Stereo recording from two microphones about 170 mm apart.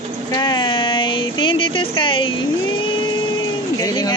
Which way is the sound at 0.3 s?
25° left (ahead or behind).